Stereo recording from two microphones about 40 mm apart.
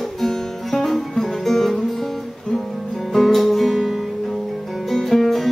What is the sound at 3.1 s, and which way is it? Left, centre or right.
Music, centre.